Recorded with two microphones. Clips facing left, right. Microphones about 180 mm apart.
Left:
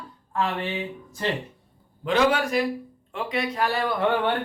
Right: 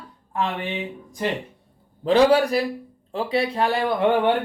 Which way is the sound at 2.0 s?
35° right (ahead or behind).